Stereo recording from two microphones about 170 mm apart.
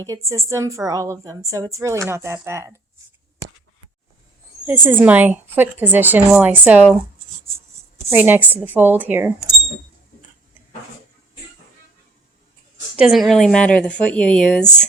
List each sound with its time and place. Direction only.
0.3 s a woman's voice: 15° right (ahead or behind)
4.6 s speech: 10° right (ahead or behind)
7.9 s a woman's voice: 10° right (ahead or behind)
13.0 s speech: centre (ahead or behind)